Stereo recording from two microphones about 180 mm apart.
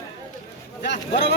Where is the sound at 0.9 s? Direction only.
70° left (ahead or behind).